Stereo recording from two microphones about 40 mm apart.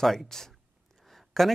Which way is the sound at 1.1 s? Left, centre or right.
Centre.